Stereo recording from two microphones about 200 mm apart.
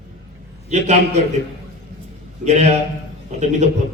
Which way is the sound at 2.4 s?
35° right (ahead or behind).